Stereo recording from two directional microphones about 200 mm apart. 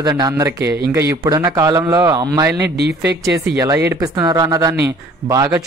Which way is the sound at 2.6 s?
55° right (ahead or behind).